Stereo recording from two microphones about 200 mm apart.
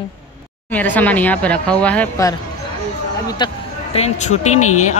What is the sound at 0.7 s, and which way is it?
Speech, 10° left (ahead or behind).